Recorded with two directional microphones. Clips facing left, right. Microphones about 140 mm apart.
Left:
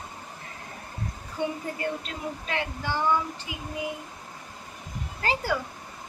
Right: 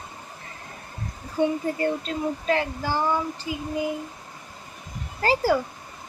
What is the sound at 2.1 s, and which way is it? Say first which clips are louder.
Speech: right 8 dB; 35° right (ahead or behind).